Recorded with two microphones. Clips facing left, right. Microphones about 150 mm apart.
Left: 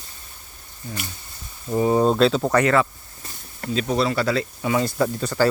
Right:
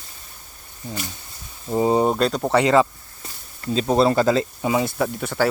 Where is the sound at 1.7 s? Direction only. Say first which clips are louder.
Even; 20° right (ahead or behind).